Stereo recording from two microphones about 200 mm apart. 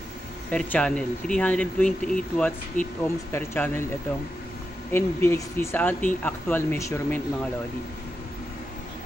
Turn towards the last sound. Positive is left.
turn(degrees=10)  # may be behind; listen again after turning